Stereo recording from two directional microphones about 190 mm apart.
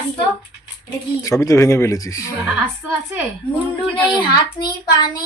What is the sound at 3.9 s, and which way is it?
A child's voice, 25° left (ahead or behind).